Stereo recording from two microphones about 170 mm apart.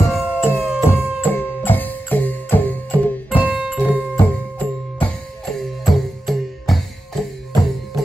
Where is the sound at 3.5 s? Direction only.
5° right (ahead or behind).